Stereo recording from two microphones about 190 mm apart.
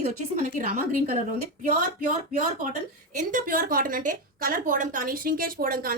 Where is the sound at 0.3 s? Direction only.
45° right (ahead or behind).